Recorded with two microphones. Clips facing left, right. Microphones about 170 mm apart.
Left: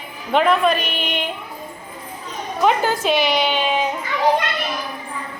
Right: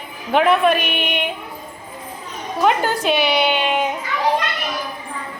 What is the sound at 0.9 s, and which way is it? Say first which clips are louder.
Speech: right 2 dB; 55° right (ahead or behind).